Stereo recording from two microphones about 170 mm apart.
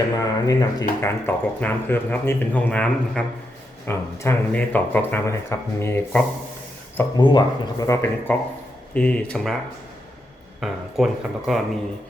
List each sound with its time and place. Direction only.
0.2 s speech: 20° left (ahead or behind)
7.2 s speech: 25° left (ahead or behind); by 9.6 s 5° left (ahead or behind)
10.6 s speech: centre (ahead or behind)